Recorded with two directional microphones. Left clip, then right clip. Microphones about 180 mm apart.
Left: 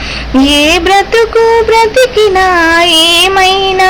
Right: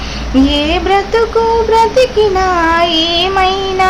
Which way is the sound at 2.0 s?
15° left (ahead or behind).